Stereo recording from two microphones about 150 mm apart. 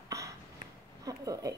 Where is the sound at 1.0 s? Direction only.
25° right (ahead or behind).